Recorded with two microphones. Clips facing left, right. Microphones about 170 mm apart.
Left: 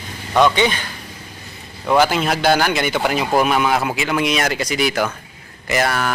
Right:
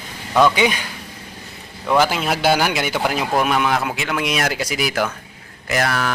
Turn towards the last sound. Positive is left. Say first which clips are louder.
# left 1 dB
turn(degrees=0)  # may be behind; listen again after turning